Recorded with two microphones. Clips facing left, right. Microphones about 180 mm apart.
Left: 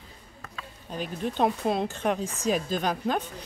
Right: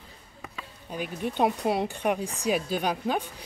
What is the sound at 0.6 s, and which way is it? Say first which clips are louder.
Speech: even; 10° right (ahead or behind).